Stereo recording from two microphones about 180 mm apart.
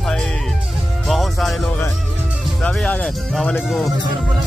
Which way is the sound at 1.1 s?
Centre (ahead or behind).